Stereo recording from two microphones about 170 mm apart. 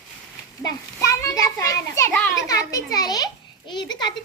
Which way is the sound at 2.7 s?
20° left (ahead or behind).